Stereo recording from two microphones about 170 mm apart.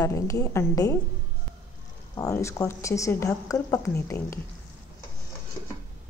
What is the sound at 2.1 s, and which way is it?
Speech, 20° left (ahead or behind).